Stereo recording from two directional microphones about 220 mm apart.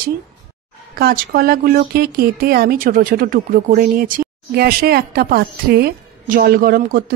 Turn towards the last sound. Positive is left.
turn(degrees=-40)  # may be behind; listen again after turning